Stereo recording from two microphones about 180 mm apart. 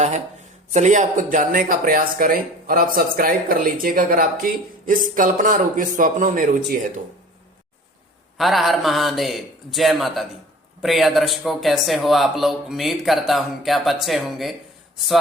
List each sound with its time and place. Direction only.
0.7 s speech: 40° right (ahead or behind)
8.4 s speech: centre (ahead or behind)